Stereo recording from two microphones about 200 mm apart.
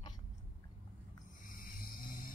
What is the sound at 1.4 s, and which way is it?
Vehicle, 45° left (ahead or behind).